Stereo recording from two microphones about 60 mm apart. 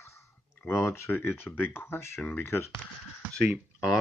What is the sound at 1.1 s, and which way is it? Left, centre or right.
Speech, left.